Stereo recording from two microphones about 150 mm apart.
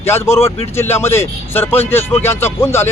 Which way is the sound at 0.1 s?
15° left (ahead or behind).